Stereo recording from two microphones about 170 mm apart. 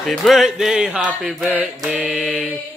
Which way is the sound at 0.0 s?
Centre (ahead or behind).